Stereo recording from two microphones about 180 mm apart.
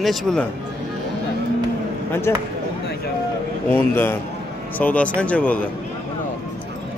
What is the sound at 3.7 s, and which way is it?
Speech, 10° left (ahead or behind).